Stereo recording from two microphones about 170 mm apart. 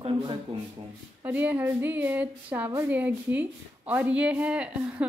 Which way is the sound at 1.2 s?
10° right (ahead or behind).